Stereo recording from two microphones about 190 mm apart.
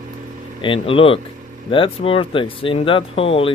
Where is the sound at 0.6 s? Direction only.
30° left (ahead or behind).